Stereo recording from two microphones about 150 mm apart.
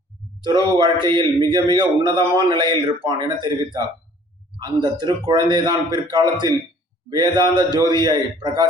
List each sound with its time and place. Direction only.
0.4 s a man's voice: 30° right (ahead or behind)